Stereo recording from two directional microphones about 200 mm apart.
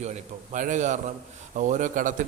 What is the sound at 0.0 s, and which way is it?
A man's voice, 35° right (ahead or behind).